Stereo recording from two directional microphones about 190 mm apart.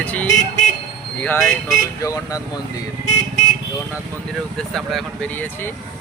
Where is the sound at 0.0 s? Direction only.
5° left (ahead or behind).